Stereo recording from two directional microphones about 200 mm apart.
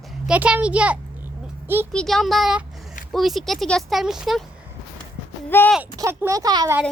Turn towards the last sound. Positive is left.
turn(degrees=-20)  # may be behind; listen again after turning